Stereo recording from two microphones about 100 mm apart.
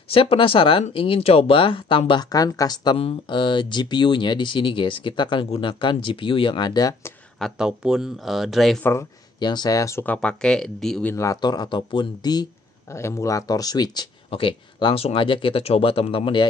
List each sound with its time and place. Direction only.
0.1 s speech: 65° left (ahead or behind)
2.3 s speech: 40° left (ahead or behind)
3.0 s speech: 60° left (ahead or behind); by 7.0 s 40° left (ahead or behind)
7.3 s speech: centre (ahead or behind)
9.4 s speech: 45° left (ahead or behind)
10.0 s speech: 10° left (ahead or behind)
11.4 s speech: 45° left (ahead or behind)
12.9 s speech: 30° left (ahead or behind)
14.3 s speech: 55° left (ahead or behind)